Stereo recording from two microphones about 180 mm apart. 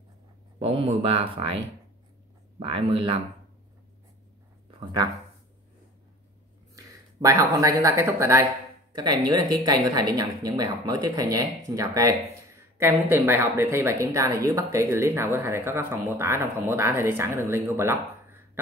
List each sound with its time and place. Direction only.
0.6 s speech: 30° right (ahead or behind)
2.6 s speech: 30° right (ahead or behind)
4.6 s a sound: 25° right (ahead or behind)
6.7 s speech: 20° right (ahead or behind)